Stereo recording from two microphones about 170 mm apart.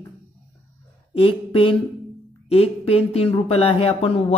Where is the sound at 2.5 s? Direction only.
35° left (ahead or behind).